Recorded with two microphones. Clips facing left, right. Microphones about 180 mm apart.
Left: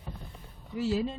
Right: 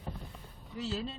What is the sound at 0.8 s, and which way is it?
Speech, 15° left (ahead or behind).